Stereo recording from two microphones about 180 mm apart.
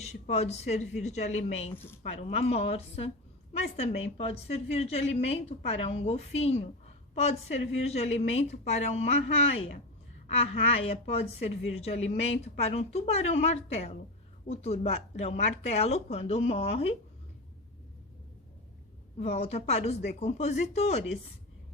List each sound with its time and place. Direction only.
0.0 s a woman's voice: 40° left (ahead or behind)
19.2 s a woman's voice: 35° left (ahead or behind)